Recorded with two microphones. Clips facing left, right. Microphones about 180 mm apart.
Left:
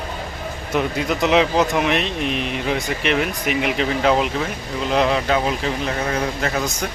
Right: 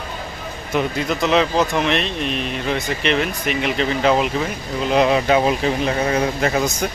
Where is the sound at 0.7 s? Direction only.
5° left (ahead or behind); by 6.7 s 20° right (ahead or behind).